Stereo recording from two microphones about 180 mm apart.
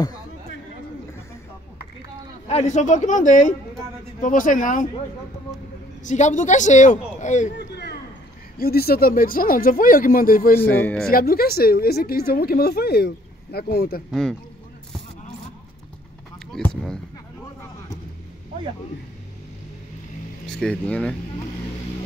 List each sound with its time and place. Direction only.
2.4 s speech: 40° left (ahead or behind)
6.0 s speech: 40° left (ahead or behind)
7.5 s a sound: 65° left (ahead or behind)
8.5 s speech: 60° left (ahead or behind)
10.6 s speech: 10° left (ahead or behind)
11.1 s a woman's voice: 55° left (ahead or behind)
16.5 s speech: 5° left (ahead or behind)
20.4 s speech: 5° left (ahead or behind)